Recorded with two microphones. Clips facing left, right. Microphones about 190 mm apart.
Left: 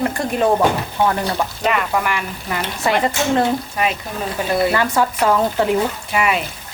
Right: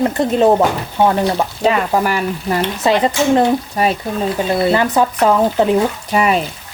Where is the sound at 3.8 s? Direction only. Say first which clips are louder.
Right 4 dB; 40° right (ahead or behind).